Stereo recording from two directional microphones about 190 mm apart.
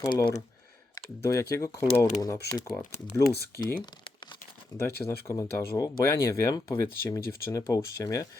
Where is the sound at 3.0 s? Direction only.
55° left (ahead or behind).